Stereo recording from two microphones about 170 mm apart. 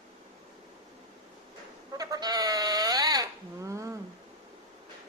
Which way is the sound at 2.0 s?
20° right (ahead or behind).